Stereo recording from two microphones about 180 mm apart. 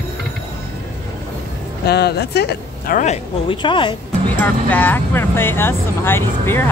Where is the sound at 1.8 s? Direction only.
65° left (ahead or behind).